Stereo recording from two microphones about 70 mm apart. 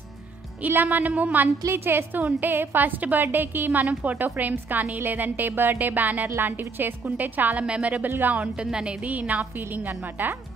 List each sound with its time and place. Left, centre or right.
0.6 s a woman's voice: right
3.8 s a woman's voice: centre